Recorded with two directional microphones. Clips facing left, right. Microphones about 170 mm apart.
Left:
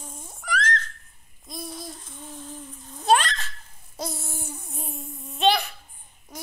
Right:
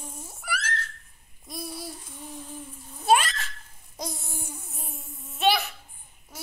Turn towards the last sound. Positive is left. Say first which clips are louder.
# left 6 dB
turn(degrees=20)  # may be behind; listen again after turning